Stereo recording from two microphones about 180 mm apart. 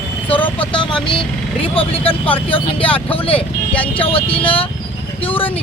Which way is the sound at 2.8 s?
5° left (ahead or behind).